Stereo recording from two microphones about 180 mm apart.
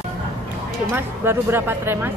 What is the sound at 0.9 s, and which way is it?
Speech, 10° right (ahead or behind).